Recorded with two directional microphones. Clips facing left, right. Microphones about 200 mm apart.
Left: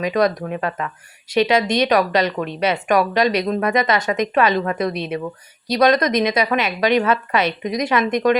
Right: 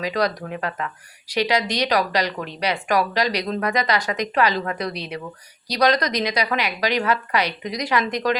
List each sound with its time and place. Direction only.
0.0 s a woman's voice: 20° left (ahead or behind)